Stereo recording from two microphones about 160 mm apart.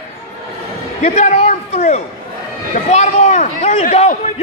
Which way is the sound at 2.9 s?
50° left (ahead or behind).